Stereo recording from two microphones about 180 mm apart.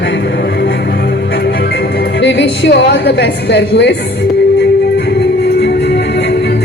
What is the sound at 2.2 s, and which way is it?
A woman's voice, 75° left (ahead or behind).